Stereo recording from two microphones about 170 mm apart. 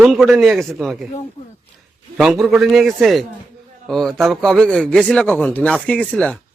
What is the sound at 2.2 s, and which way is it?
Speech, centre (ahead or behind).